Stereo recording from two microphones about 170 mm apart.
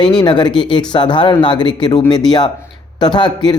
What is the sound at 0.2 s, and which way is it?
Speech, 25° left (ahead or behind).